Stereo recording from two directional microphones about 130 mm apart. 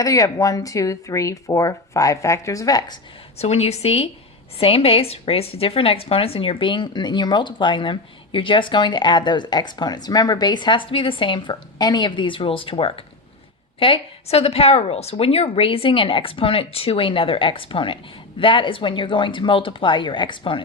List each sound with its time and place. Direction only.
0.0 s speech: 25° left (ahead or behind)
3.3 s a woman's voice: 55° left (ahead or behind); by 20.6 s 40° left (ahead or behind)